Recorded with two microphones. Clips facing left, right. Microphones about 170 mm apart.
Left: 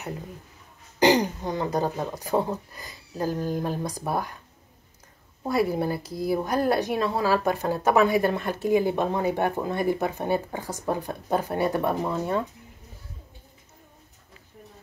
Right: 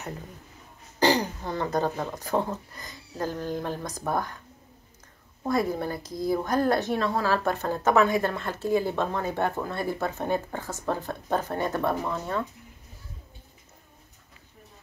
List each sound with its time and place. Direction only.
0.9 s speech: 15° left (ahead or behind)
5.4 s speech: 10° left (ahead or behind)